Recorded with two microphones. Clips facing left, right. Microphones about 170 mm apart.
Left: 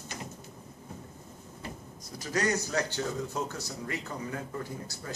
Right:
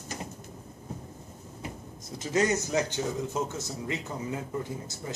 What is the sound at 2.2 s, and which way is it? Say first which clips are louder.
Speech: right 3 dB; 20° right (ahead or behind).